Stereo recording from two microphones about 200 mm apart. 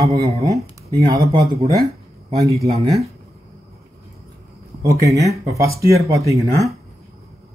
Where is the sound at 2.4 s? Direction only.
15° right (ahead or behind).